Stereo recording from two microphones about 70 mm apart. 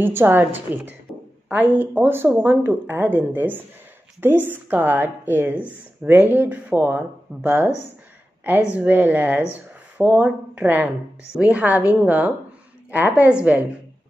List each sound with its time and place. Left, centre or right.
0.0 s speech: right
8.7 s speech: right